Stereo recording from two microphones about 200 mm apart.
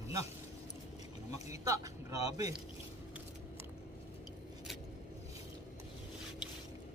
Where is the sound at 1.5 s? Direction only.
15° right (ahead or behind).